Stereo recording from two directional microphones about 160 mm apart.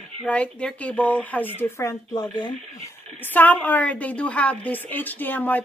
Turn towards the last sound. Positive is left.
turn(degrees=10)  # may be behind; listen again after turning